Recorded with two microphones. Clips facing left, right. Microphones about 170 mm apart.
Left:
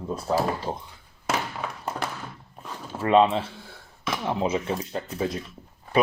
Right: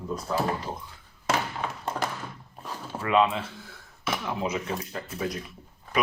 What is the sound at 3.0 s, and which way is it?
Speech, 30° left (ahead or behind).